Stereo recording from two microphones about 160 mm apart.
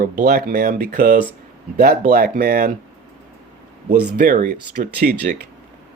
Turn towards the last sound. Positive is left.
turn(degrees=-75)  # may be behind; listen again after turning